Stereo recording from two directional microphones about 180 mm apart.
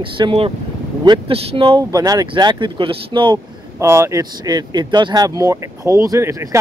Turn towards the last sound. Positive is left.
turn(degrees=-20)  # may be behind; listen again after turning